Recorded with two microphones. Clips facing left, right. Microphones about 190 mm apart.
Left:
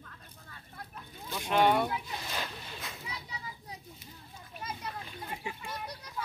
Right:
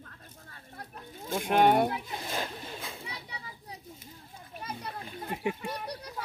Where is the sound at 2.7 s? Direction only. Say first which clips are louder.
Right 2 dB; 30° right (ahead or behind).